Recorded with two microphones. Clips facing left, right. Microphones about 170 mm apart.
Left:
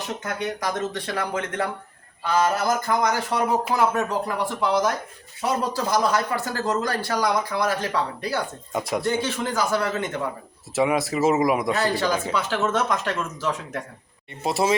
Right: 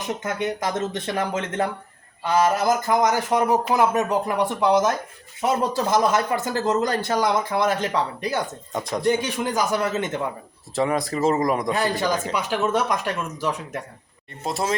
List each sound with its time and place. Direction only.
0.2 s speech: 20° right (ahead or behind)
8.7 s speech: 10° left (ahead or behind)
9.0 s speech: 15° right (ahead or behind)
10.8 s speech: 5° left (ahead or behind)
11.7 s speech: 15° right (ahead or behind)
14.4 s speech: 5° left (ahead or behind)